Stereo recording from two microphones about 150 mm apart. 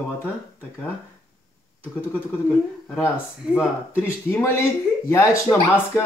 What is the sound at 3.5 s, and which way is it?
Speech, 15° left (ahead or behind).